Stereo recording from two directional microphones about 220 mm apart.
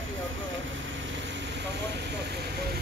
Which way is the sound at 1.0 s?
55° right (ahead or behind).